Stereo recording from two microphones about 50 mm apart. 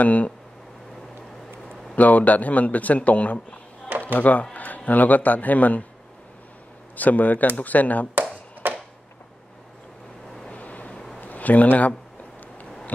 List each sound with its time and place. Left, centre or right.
0.0 s speech: left
2.0 s speech: left
7.0 s speech: left
10.5 s vehicle: left
10.9 s a sound: centre
11.1 s a sound: left